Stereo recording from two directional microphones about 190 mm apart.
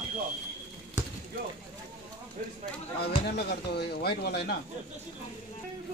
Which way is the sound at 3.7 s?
60° left (ahead or behind).